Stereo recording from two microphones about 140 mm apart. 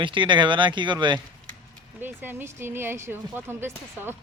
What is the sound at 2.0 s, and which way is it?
Speech, 15° right (ahead or behind).